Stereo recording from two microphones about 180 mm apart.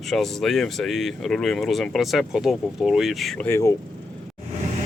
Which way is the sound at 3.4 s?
15° left (ahead or behind).